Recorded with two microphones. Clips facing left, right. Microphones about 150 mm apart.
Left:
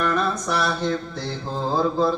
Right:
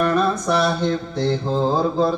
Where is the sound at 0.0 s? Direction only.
25° right (ahead or behind).